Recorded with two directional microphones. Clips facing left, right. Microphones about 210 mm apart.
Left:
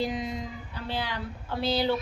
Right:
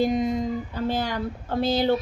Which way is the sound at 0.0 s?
50° right (ahead or behind).